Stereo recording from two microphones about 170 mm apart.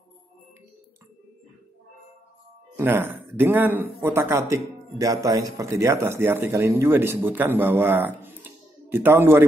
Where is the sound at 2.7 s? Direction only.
15° right (ahead or behind).